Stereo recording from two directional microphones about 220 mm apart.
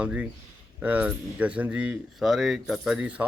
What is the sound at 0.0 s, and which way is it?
Speech, 5° right (ahead or behind).